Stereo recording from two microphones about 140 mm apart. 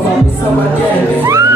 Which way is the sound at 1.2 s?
25° right (ahead or behind).